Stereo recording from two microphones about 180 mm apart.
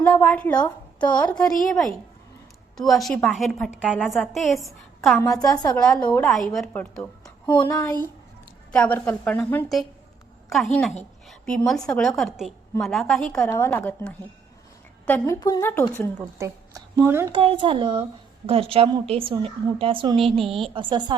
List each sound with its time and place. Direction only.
0.0 s a woman's voice: 10° left (ahead or behind)
5.2 s a woman's voice: 20° left (ahead or behind)
5.7 s a woman's voice: 5° left (ahead or behind)
7.4 s a woman's voice: 25° left (ahead or behind)
15.4 s a woman's voice: 20° left (ahead or behind)
16.4 s speech: 15° right (ahead or behind)
17.3 s a woman's voice: 30° right (ahead or behind)